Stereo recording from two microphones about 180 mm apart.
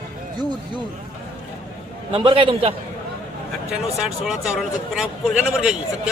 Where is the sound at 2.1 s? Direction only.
30° right (ahead or behind).